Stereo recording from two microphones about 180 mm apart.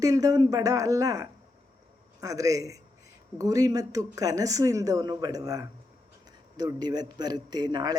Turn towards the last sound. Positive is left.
turn(degrees=-25)  # may be behind; listen again after turning